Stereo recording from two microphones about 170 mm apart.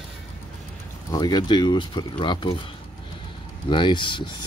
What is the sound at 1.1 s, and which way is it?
Speech, 25° left (ahead or behind).